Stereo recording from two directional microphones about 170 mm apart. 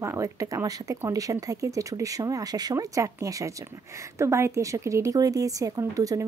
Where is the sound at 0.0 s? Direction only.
15° right (ahead or behind).